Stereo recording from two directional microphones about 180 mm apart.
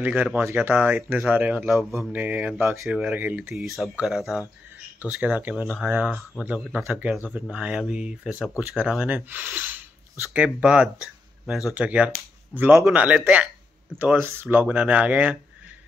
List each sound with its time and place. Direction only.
0.0 s speech: 10° right (ahead or behind)